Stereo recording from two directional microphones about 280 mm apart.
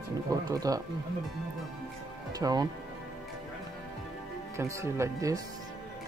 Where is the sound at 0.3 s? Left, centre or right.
Centre.